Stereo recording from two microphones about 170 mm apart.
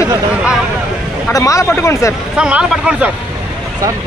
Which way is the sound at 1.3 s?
20° left (ahead or behind).